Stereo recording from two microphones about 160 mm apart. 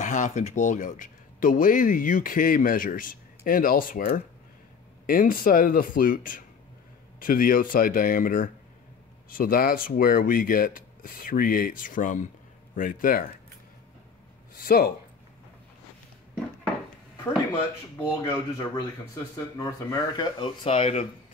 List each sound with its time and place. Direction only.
0.0 s speech: 50° left (ahead or behind)
14.6 s speech: 70° left (ahead or behind)
18.2 s speech: 20° left (ahead or behind); by 21.1 s 40° left (ahead or behind)